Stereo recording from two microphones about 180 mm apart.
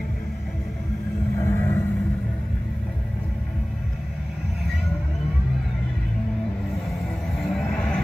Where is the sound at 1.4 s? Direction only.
15° left (ahead or behind).